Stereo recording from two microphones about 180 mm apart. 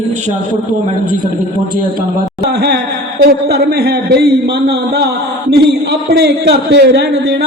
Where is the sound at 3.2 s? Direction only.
65° right (ahead or behind).